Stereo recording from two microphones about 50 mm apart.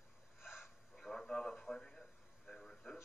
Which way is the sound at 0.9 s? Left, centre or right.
Centre.